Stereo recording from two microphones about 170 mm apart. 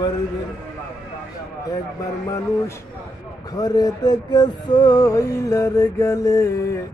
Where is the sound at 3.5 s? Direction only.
20° left (ahead or behind).